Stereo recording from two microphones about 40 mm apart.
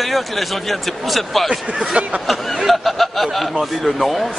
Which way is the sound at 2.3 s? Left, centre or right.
Centre.